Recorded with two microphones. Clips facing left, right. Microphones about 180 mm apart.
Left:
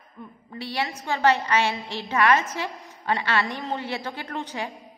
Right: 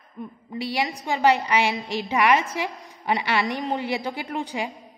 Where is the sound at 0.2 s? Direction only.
15° right (ahead or behind).